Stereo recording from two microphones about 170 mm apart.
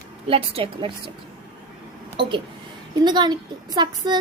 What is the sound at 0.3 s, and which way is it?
Speech, 35° right (ahead or behind).